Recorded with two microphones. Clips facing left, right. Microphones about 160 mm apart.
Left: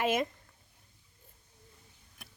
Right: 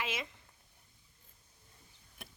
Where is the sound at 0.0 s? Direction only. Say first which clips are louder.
Left 10 dB; 50° left (ahead or behind).